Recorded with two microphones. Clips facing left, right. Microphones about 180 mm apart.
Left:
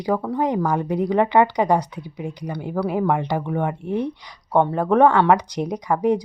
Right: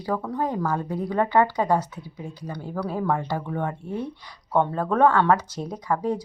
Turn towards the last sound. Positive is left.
turn(degrees=15)  # may be behind; listen again after turning